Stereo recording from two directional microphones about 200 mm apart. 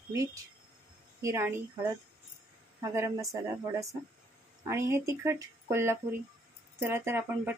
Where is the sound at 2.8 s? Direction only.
15° right (ahead or behind).